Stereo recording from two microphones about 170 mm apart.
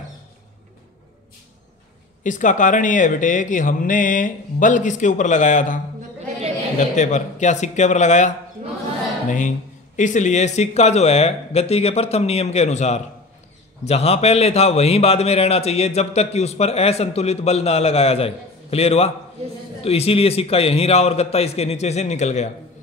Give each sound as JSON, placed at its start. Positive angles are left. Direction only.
{"t": 2.2, "sound": "speech", "side_deg": 50}
{"t": 6.8, "sound": "speech", "side_deg": 45}
{"t": 9.3, "sound": "a man's voice", "side_deg": 45}